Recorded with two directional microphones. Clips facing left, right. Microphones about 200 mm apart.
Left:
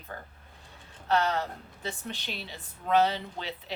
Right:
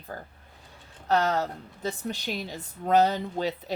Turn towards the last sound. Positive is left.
turn(degrees=-40)  # may be behind; listen again after turning